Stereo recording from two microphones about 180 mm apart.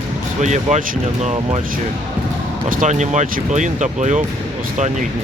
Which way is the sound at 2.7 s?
45° right (ahead or behind).